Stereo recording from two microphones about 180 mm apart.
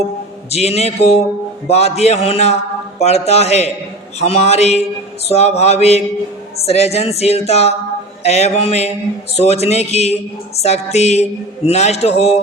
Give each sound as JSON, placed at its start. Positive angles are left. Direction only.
{"t": 0.5, "sound": "speech", "side_deg": 35}